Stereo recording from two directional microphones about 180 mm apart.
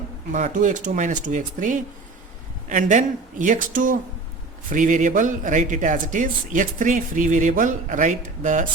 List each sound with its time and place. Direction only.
0.3 s speech: 45° right (ahead or behind)